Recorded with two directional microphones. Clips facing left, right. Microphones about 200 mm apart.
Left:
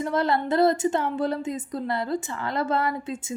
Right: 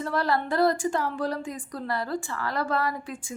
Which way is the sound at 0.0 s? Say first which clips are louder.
Left 3 dB; 20° left (ahead or behind).